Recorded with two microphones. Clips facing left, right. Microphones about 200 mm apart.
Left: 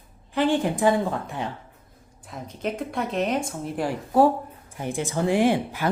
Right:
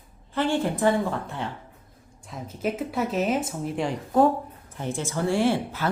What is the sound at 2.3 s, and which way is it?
Speech, 5° right (ahead or behind).